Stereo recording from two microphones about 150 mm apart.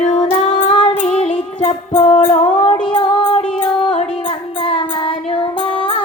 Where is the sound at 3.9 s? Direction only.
40° left (ahead or behind).